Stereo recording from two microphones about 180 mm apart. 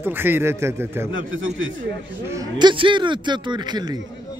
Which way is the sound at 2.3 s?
20° right (ahead or behind).